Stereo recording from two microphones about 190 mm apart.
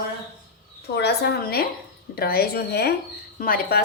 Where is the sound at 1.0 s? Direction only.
60° left (ahead or behind).